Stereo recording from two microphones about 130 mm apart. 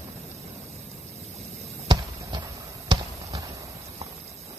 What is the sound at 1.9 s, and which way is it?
Basketball bounce, 35° right (ahead or behind).